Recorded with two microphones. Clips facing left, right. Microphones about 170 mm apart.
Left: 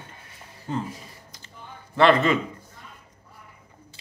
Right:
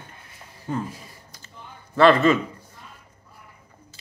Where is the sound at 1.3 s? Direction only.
20° left (ahead or behind).